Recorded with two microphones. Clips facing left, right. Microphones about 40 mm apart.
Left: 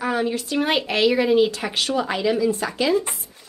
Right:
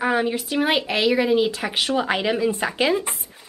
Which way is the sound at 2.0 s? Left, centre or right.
Right.